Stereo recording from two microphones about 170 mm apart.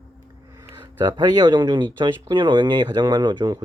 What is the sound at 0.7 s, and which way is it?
Speech, 25° right (ahead or behind).